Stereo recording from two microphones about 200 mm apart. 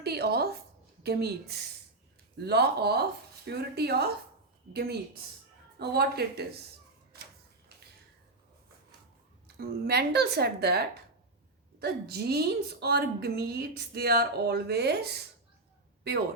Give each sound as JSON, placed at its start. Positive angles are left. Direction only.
{"t": 0.0, "sound": "a woman's voice", "side_deg": -55}
{"t": 9.6, "sound": "a woman's voice", "side_deg": -55}